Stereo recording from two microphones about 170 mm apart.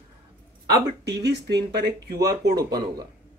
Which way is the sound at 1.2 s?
80° right.